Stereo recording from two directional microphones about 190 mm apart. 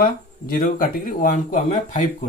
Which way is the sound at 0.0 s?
50° left (ahead or behind).